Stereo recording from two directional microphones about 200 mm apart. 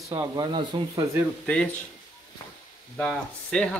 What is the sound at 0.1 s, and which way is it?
Speech, 15° right (ahead or behind).